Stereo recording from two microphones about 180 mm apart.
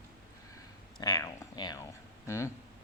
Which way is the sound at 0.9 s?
20° left (ahead or behind).